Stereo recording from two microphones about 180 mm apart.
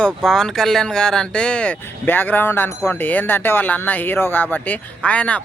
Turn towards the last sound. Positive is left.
turn(degrees=5)  # may be behind; listen again after turning